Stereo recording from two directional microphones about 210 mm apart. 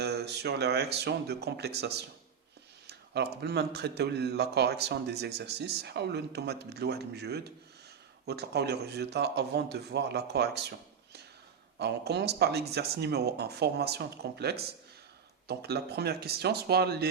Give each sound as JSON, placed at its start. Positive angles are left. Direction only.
{"t": 0.0, "sound": "speech", "side_deg": -50}